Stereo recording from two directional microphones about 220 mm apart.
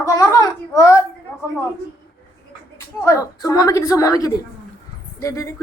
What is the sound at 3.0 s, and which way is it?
A woman's voice, 15° left (ahead or behind).